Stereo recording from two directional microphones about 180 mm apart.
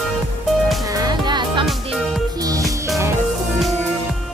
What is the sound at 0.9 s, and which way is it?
Music, 25° right (ahead or behind).